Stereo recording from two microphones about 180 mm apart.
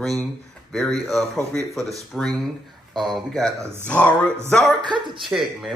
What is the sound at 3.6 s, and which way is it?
Speech, 15° right (ahead or behind).